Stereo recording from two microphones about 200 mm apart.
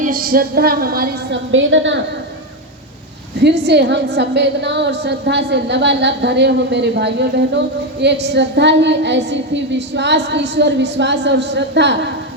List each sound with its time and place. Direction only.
0.0 s a woman's voice: 45° right (ahead or behind)
1.5 s a woman's voice: 70° right (ahead or behind)
3.4 s a woman's voice: 60° right (ahead or behind)